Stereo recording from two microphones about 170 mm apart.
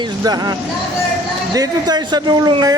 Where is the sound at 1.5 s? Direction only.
25° right (ahead or behind).